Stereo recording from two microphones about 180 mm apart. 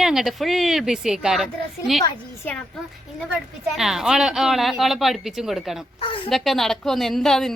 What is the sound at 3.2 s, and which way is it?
A woman's voice, 5° right (ahead or behind).